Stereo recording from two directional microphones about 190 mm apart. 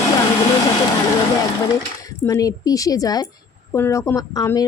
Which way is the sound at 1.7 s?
15° left (ahead or behind).